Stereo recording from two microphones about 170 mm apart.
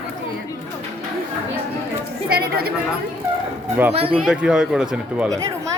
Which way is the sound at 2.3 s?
65° right (ahead or behind).